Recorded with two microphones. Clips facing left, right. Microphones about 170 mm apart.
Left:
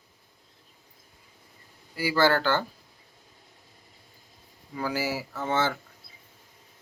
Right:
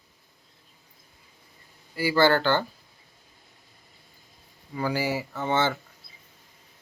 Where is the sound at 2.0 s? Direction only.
5° left (ahead or behind).